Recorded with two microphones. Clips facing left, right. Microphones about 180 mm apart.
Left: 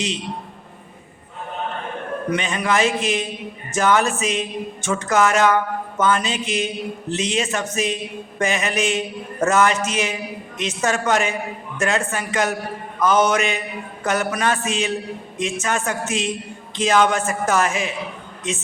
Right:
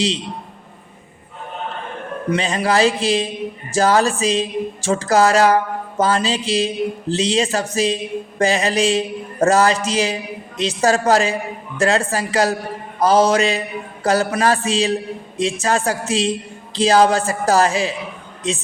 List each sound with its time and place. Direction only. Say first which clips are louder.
2.3 s speech: right 4 dB; 30° right (ahead or behind)